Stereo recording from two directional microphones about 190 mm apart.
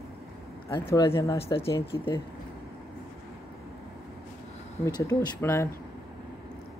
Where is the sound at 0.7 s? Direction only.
15° left (ahead or behind).